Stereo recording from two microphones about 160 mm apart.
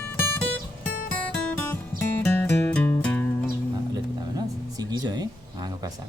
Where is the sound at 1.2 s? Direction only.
10° left (ahead or behind).